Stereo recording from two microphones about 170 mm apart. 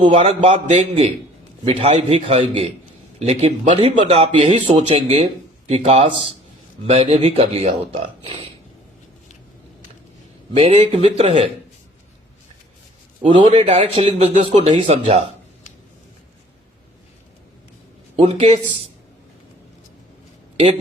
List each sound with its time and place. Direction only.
0.0 s speech: 35° right (ahead or behind)
10.5 s speech: 35° right (ahead or behind)
13.2 s speech: 30° right (ahead or behind)
18.2 s speech: 40° right (ahead or behind)